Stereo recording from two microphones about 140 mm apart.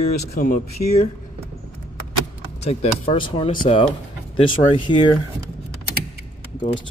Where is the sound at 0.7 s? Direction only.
50° left (ahead or behind).